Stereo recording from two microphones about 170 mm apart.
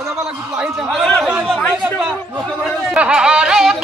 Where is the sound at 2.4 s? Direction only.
Centre (ahead or behind).